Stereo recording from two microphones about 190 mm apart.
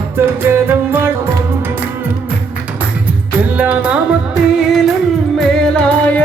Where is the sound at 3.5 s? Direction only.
5° right (ahead or behind).